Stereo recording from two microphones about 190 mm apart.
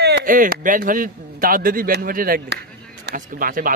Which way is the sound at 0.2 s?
45° right (ahead or behind).